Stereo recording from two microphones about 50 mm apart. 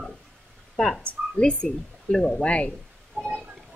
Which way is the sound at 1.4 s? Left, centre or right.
Left.